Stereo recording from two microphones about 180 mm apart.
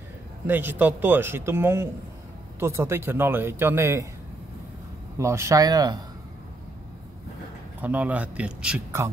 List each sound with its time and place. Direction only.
0.5 s speech: 10° right (ahead or behind)
5.2 s speech: 15° right (ahead or behind)
7.8 s speech: 10° right (ahead or behind)